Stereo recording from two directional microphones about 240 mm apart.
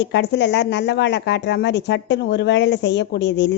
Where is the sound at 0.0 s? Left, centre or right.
Left.